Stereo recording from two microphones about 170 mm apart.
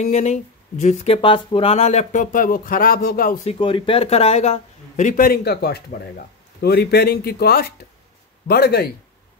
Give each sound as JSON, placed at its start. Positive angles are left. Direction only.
{"t": 0.0, "sound": "speech", "side_deg": 40}
{"t": 3.4, "sound": "speech", "side_deg": 30}